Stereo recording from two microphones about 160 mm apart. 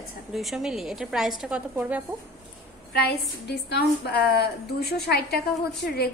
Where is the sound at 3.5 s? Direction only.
90° left.